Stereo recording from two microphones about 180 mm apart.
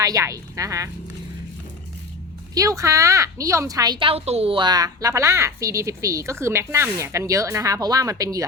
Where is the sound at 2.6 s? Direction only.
15° right (ahead or behind).